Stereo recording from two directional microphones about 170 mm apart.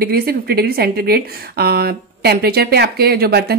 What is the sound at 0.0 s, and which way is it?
A woman's voice, 65° right (ahead or behind).